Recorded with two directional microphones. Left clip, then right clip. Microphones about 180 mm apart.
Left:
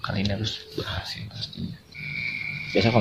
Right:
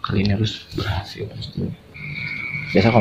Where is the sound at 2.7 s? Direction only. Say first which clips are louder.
Right 5 dB; 10° left (ahead or behind).